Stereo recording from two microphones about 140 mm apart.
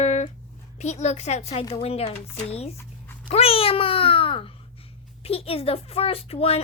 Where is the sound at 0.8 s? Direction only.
55° left (ahead or behind).